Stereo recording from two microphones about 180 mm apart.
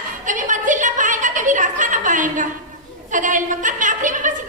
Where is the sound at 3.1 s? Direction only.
45° right (ahead or behind).